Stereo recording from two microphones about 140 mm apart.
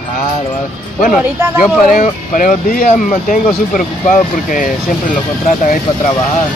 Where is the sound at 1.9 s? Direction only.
70° left (ahead or behind).